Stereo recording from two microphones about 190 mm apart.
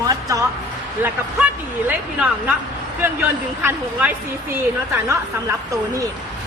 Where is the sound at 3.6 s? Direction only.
10° right (ahead or behind).